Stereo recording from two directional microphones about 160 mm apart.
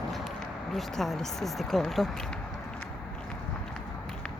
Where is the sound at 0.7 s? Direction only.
Centre (ahead or behind).